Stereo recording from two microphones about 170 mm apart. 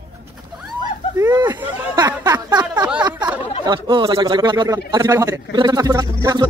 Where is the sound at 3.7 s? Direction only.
25° right (ahead or behind).